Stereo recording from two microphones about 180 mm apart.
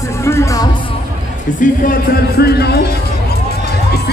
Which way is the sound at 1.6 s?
50° left (ahead or behind).